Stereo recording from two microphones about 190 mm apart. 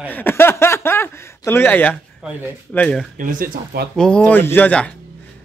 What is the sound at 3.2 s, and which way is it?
Speech, 45° right (ahead or behind).